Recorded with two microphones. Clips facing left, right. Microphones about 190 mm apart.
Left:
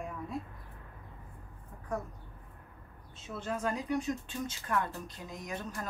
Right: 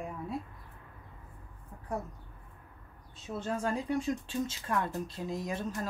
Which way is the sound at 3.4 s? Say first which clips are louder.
Right 1 dB; 30° right (ahead or behind).